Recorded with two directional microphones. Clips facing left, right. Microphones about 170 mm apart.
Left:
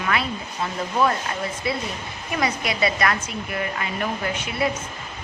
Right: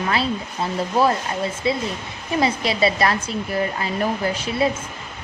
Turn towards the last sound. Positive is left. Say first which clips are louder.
# right 4 dB
turn(degrees=-35)  # may be behind; listen again after turning